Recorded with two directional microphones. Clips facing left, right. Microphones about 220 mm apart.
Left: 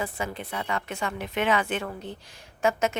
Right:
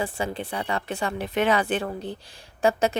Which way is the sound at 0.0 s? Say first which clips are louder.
Right 3 dB; 30° right (ahead or behind).